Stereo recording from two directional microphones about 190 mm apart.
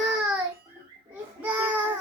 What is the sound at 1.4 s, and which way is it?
Speech, 10° right (ahead or behind).